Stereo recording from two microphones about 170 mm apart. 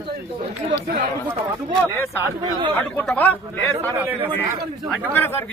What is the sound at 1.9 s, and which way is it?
Speech, 15° left (ahead or behind).